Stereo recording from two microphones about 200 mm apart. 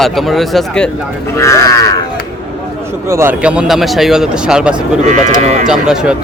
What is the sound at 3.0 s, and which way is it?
Speech, 15° right (ahead or behind).